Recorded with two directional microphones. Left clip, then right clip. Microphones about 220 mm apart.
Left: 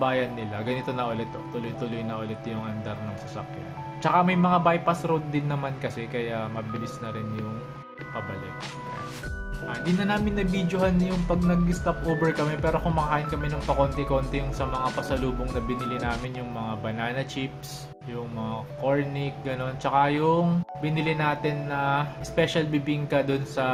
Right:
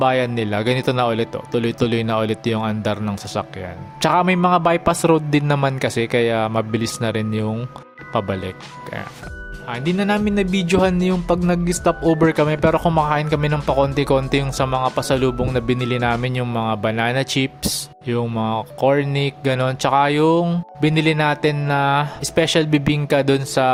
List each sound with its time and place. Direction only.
0.0 s speech: 50° right (ahead or behind)
10.5 s speech: 50° right (ahead or behind)